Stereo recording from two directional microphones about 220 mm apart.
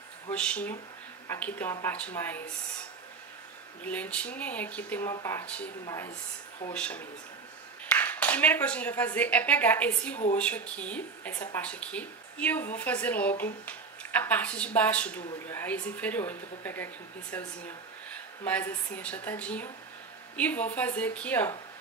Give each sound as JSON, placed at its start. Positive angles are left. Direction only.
{"t": 0.3, "sound": "speech", "side_deg": 5}
{"t": 3.8, "sound": "speech", "side_deg": 5}
{"t": 6.7, "sound": "a woman's voice", "side_deg": 5}